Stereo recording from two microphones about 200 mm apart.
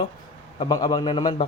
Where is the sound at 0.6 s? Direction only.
20° left (ahead or behind).